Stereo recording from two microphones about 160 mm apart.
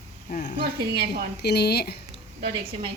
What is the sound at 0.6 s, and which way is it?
Speech, 70° right (ahead or behind).